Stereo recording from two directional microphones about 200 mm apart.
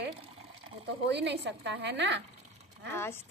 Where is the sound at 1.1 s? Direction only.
60° right (ahead or behind).